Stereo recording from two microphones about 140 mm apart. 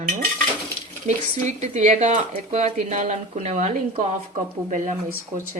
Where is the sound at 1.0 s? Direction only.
60° right (ahead or behind).